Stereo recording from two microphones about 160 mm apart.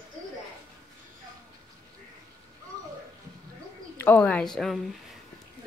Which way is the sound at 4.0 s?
10° left (ahead or behind).